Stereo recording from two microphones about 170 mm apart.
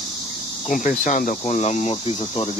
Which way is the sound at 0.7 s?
50° left (ahead or behind).